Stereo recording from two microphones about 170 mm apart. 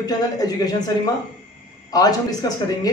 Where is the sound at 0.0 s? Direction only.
20° left (ahead or behind).